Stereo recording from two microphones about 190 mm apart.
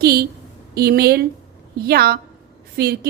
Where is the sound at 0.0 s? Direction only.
55° right (ahead or behind).